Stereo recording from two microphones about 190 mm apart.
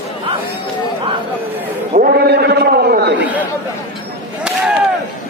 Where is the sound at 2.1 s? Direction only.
60° right (ahead or behind).